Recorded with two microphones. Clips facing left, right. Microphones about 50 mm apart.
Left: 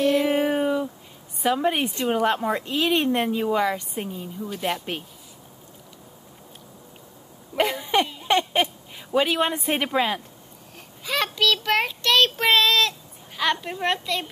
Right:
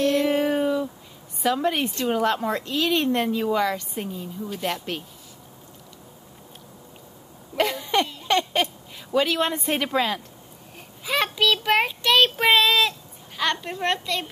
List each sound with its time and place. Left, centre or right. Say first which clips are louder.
0.0 s a sound: even; centre
1.4 s a woman's voice: left 1 dB; centre
4.5 s a woman's voice: left 1 dB; centre
7.5 s a sound: left 1 dB; centre
9.9 s a woman's voice: left 1 dB; centre
11.1 s child singing: right 1 dB; centre
13.4 s a child's voice: left 1 dB; centre